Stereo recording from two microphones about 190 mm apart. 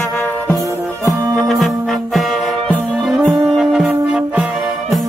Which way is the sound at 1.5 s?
Centre (ahead or behind).